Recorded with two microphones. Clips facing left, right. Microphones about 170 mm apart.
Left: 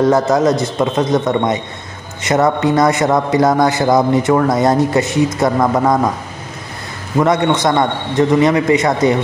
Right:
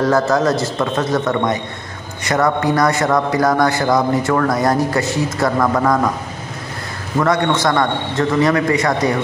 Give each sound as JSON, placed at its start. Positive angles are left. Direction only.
{"t": 0.0, "sound": "speech", "side_deg": 20}
{"t": 7.2, "sound": "speech", "side_deg": 20}